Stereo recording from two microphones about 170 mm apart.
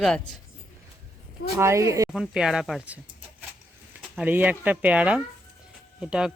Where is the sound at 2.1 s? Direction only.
5° right (ahead or behind).